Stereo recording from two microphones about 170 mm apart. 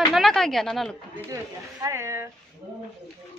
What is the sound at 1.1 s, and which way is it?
Speech, 20° right (ahead or behind).